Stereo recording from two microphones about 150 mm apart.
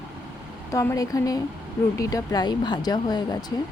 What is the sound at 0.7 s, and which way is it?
Speech, 20° left (ahead or behind).